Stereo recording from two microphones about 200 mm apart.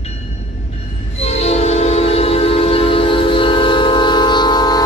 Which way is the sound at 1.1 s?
30° left (ahead or behind).